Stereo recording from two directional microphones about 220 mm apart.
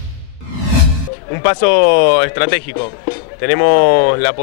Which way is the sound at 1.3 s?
20° left (ahead or behind).